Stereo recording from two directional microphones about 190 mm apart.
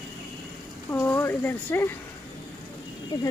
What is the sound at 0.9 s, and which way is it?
Speech, 10° left (ahead or behind).